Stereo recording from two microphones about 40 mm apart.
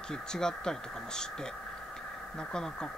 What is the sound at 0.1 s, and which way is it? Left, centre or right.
Speech, centre.